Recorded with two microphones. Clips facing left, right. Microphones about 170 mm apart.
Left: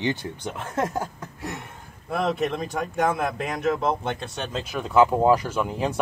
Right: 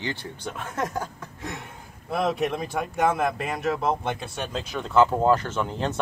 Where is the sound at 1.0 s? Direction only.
5° left (ahead or behind).